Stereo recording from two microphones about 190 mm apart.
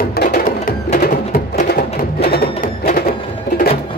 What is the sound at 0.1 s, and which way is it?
Music, 55° left (ahead or behind).